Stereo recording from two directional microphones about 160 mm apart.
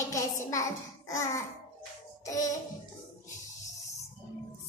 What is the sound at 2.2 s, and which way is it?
Music, 20° left (ahead or behind).